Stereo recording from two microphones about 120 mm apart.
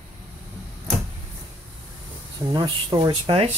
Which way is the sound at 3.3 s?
60° right (ahead or behind).